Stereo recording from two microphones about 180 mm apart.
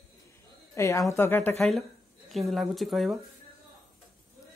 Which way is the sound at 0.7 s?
15° left (ahead or behind).